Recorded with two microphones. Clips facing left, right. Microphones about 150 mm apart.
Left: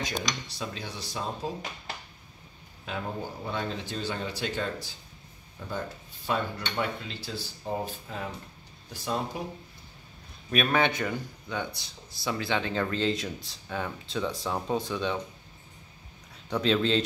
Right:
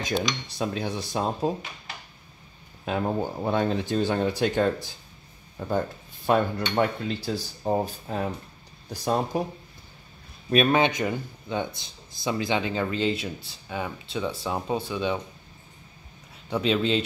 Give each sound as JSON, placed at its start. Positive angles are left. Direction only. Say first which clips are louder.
{"t": 0.5, "sound": "speech", "louder": "right 8 dB", "side_deg": -50}
{"t": 2.8, "sound": "speech", "louder": "right 8 dB", "side_deg": -50}
{"t": 10.5, "sound": "a man's voice", "louder": "right 6 dB", "side_deg": -30}
{"t": 10.8, "sound": "speech", "louder": "right 3 dB", "side_deg": -15}
{"t": 16.4, "sound": "speech", "louder": "right 1 dB", "side_deg": -10}